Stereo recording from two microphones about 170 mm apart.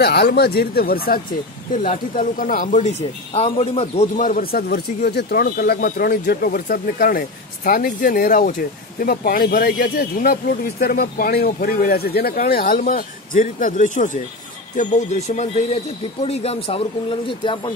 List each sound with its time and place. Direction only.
0.0 s speech: 75° left (ahead or behind)
1.7 s speech: 50° left (ahead or behind); by 17.7 s 30° left (ahead or behind)